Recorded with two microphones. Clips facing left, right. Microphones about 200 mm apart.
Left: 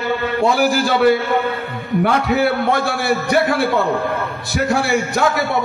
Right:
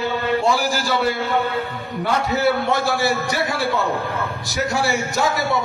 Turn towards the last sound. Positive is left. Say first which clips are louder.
# left 3 dB
turn(degrees=55)  # may be behind; listen again after turning